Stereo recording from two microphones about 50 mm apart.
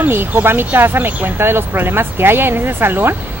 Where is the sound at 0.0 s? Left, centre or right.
Right.